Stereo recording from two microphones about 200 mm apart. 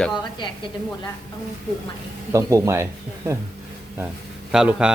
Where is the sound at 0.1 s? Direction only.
20° left (ahead or behind).